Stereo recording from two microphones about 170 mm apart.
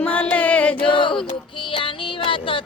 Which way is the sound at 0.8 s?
30° left (ahead or behind).